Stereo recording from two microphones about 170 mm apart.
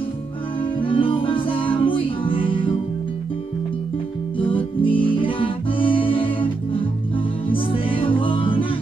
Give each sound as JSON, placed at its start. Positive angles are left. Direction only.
{"t": 0.7, "sound": "music", "side_deg": 30}
{"t": 4.4, "sound": "music", "side_deg": 30}